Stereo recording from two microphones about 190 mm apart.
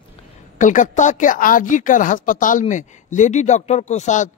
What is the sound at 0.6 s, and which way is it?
A woman's voice, 40° left (ahead or behind).